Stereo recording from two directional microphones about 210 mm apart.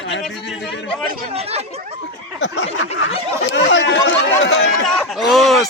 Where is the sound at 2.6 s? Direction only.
25° left (ahead or behind).